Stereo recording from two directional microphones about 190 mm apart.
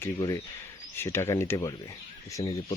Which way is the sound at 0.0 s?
15° left (ahead or behind).